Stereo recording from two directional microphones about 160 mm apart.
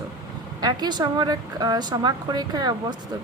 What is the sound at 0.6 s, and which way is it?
A woman's voice, 25° right (ahead or behind).